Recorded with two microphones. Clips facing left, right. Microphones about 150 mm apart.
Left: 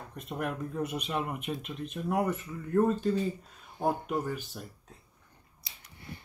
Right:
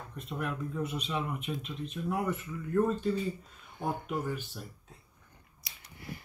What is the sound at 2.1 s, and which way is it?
Speech, 40° left (ahead or behind).